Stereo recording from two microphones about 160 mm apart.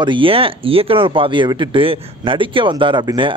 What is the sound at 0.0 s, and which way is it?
Speech, 30° right (ahead or behind).